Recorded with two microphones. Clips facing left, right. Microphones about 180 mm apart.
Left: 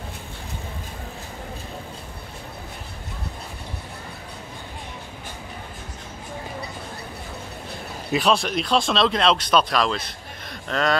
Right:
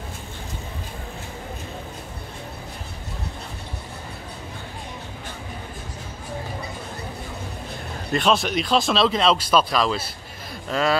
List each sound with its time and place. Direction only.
8.1 s speech: centre (ahead or behind)